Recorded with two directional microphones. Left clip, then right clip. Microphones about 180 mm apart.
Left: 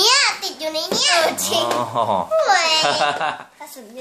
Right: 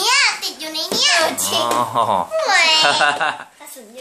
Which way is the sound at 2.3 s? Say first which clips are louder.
Even; 45° left (ahead or behind).